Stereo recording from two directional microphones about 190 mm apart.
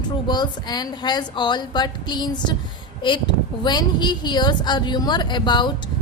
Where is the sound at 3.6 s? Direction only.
25° left (ahead or behind).